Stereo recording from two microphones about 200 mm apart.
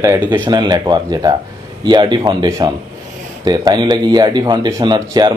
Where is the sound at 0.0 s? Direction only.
15° right (ahead or behind).